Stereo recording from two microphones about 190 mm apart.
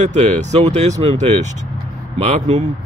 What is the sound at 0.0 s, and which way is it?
Speech, 35° right (ahead or behind).